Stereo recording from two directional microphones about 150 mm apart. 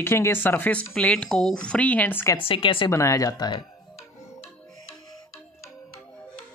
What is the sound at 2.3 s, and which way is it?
Speech, 35° left (ahead or behind).